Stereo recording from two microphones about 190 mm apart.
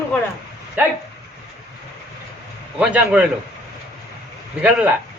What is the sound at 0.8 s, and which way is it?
Speech, 10° right (ahead or behind).